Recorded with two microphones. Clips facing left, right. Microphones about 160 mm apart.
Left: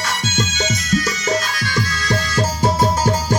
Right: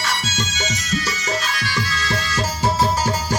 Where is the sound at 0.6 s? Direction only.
45° left (ahead or behind).